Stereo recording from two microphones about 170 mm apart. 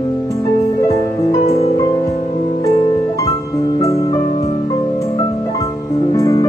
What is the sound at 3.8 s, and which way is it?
Music, 20° left (ahead or behind).